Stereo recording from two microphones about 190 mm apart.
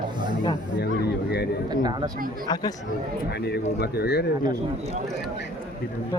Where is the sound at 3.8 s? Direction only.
55° left (ahead or behind).